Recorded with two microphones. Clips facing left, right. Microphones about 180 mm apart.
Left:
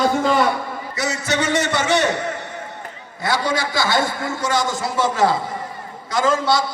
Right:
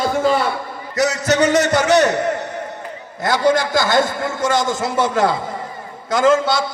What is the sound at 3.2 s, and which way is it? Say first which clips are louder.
A man's voice: right 5 dB; 50° right (ahead or behind).